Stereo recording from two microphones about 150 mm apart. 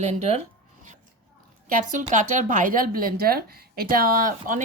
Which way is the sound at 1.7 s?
55° right (ahead or behind).